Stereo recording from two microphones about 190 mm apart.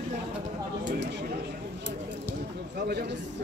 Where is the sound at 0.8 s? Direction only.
70° right (ahead or behind).